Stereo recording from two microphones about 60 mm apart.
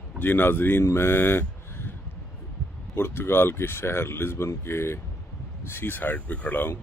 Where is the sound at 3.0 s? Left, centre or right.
Left.